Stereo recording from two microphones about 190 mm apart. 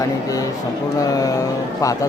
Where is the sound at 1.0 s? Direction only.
20° left (ahead or behind).